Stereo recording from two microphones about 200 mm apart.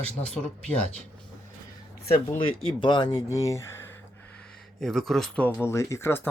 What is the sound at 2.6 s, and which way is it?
Speech, 20° left (ahead or behind).